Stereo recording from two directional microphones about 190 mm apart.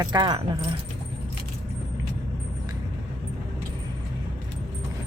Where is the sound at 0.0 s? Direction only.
20° right (ahead or behind).